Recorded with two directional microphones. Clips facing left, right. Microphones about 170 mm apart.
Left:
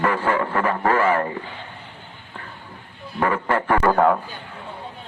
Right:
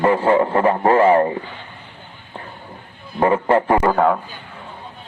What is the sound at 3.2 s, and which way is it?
Speech, 25° right (ahead or behind).